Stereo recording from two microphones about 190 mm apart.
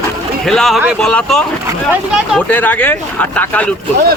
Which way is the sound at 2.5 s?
10° left (ahead or behind).